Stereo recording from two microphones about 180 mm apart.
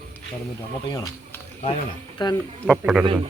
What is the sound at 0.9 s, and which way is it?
Speech, 20° left (ahead or behind).